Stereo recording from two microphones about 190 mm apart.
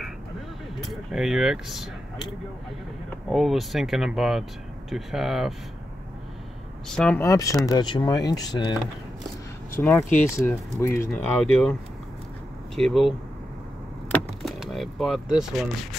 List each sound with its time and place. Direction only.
0.8 s speech: centre (ahead or behind)
3.3 s speech: centre (ahead or behind)
6.9 s speech: 5° left (ahead or behind)
7.2 s speech: 15° left (ahead or behind)
9.8 s speech: 10° left (ahead or behind)
12.7 s speech: centre (ahead or behind)
14.1 s vehicle: centre (ahead or behind)
15.3 s speech: centre (ahead or behind)